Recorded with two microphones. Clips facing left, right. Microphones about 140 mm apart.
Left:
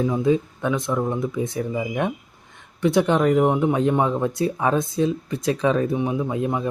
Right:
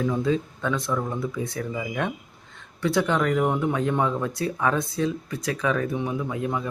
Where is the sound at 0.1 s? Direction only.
15° left (ahead or behind).